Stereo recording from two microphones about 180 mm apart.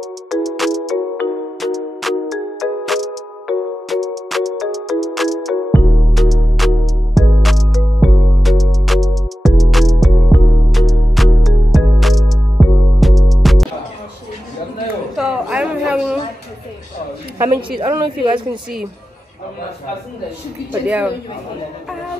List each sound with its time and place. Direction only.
0.3 s music: centre (ahead or behind)
15.1 s a sound: 5° right (ahead or behind)
17.6 s a woman's voice: 25° right (ahead or behind)
20.8 s speech: 5° right (ahead or behind)